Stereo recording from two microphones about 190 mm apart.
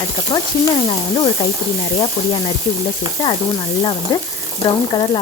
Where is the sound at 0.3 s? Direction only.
25° left (ahead or behind).